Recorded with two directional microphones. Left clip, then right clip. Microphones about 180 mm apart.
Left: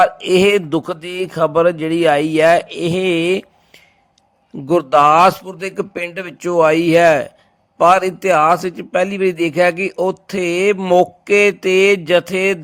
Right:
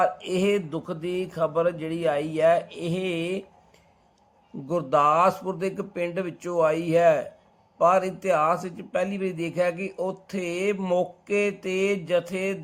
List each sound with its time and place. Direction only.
0.0 s a man's voice: 35° left (ahead or behind)